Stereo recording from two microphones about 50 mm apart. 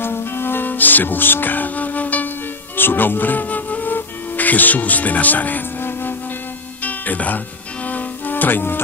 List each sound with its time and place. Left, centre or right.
0.0 s music: left